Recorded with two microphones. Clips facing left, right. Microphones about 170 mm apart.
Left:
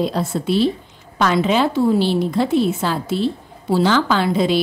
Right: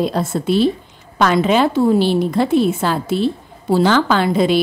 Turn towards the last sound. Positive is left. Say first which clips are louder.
# right 2 dB
turn(degrees=-55)  # may be behind; listen again after turning